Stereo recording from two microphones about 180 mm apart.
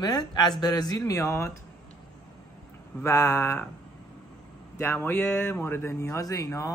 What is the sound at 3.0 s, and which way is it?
Speech, 15° left (ahead or behind).